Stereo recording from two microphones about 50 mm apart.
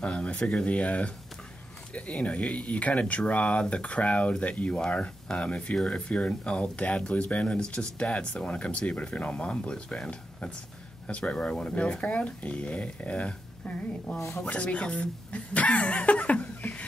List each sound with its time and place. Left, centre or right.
0.0 s speech: left
14.1 s speech: centre
14.4 s speech: left